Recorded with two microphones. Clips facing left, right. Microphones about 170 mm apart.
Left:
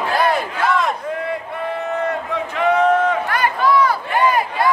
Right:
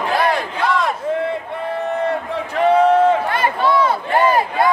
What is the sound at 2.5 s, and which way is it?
Crowd, 30° right (ahead or behind).